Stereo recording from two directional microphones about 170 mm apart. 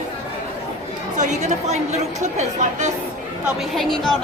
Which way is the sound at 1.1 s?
45° right (ahead or behind).